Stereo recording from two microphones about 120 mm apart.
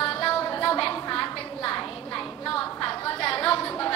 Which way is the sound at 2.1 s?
5° left (ahead or behind).